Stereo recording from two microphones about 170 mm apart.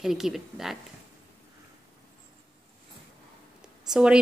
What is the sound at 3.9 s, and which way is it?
Speech, 5° right (ahead or behind).